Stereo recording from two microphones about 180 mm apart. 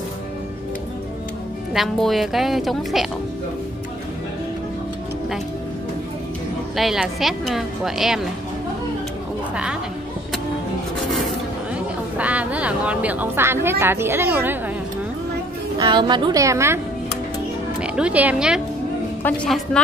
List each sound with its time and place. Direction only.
1.7 s speech: centre (ahead or behind)
6.8 s speech: centre (ahead or behind)
11.0 s zipper: centre (ahead or behind)
12.2 s speech: 10° right (ahead or behind)
15.8 s a woman's voice: 25° right (ahead or behind); by 18.6 s 5° right (ahead or behind)
19.2 s speech: 5° left (ahead or behind)